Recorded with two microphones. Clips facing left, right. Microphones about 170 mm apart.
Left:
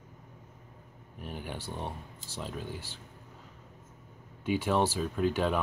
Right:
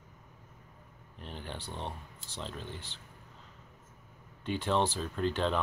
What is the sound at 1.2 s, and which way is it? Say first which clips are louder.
Speech: left 3 dB; 10° left (ahead or behind).